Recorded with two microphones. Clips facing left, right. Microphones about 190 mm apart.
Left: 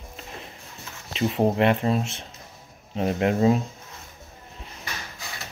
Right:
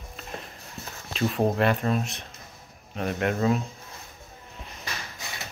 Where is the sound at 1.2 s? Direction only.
20° left (ahead or behind).